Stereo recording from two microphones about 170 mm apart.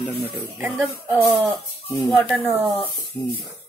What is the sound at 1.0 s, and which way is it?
Speech, 15° right (ahead or behind).